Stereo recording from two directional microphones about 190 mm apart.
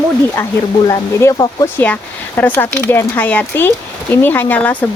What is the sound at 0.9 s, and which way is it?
Speech, 20° left (ahead or behind).